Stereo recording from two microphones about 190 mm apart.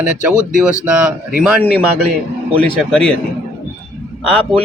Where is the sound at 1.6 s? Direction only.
55° left (ahead or behind).